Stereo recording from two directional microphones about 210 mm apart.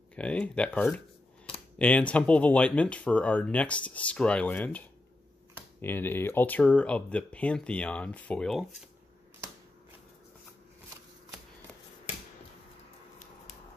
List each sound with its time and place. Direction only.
0.1 s speech: 5° left (ahead or behind)